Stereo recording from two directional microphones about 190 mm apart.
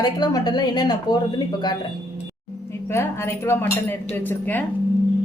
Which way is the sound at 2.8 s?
10° left (ahead or behind).